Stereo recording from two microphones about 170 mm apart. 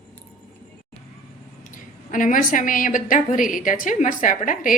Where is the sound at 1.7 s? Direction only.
50° left (ahead or behind).